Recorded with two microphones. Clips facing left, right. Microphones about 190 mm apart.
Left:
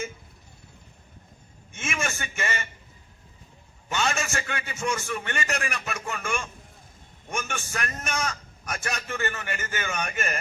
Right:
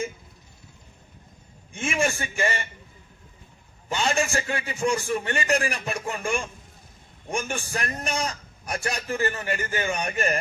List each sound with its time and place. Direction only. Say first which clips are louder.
1.7 s a man's voice: right 6 dB; 30° right (ahead or behind)
3.9 s a man's voice: right 3 dB; 30° right (ahead or behind)